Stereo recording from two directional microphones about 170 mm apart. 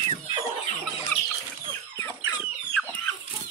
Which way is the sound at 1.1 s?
10° left (ahead or behind).